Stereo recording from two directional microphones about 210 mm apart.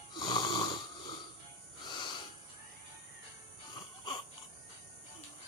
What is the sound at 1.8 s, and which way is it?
Snort, 20° left (ahead or behind).